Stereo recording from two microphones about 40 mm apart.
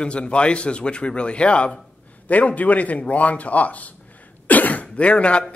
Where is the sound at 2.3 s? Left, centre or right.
Left.